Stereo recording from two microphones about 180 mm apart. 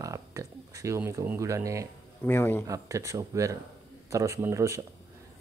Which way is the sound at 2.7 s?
15° right (ahead or behind).